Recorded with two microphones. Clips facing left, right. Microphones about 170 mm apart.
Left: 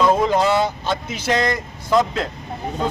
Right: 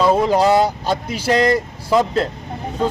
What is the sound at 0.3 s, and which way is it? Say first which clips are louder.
Speech: right 3 dB; 40° right (ahead or behind).